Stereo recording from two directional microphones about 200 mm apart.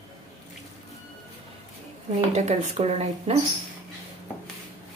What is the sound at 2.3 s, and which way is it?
Speech, 35° right (ahead or behind).